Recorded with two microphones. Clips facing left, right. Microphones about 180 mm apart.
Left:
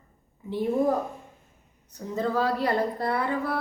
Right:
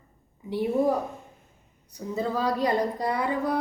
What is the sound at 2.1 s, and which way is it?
A woman's voice, 15° right (ahead or behind).